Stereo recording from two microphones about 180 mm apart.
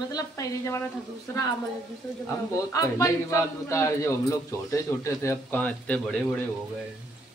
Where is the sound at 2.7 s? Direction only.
20° left (ahead or behind).